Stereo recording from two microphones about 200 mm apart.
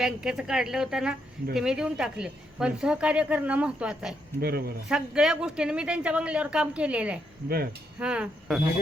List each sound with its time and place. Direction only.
0.0 s a woman's voice: 5° right (ahead or behind)
4.4 s speech: 50° right (ahead or behind)
4.9 s a woman's voice: 5° right (ahead or behind)
7.4 s speech: 50° right (ahead or behind)
7.9 s a woman's voice: 5° right (ahead or behind)